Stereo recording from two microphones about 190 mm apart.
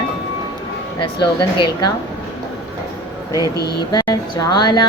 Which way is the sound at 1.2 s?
25° left (ahead or behind).